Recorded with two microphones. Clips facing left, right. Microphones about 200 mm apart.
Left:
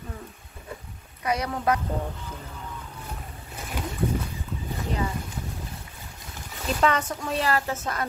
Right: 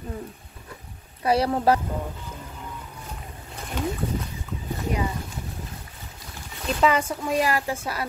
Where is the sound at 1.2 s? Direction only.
30° right (ahead or behind).